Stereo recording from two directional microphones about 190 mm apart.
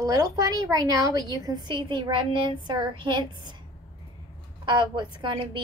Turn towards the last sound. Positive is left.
turn(degrees=-25)  # may be behind; listen again after turning